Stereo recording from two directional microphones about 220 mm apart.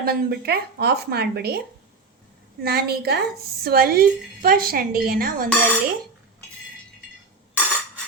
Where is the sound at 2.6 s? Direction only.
45° right (ahead or behind).